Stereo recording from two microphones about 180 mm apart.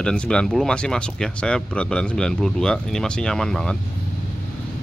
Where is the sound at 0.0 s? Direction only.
5° left (ahead or behind).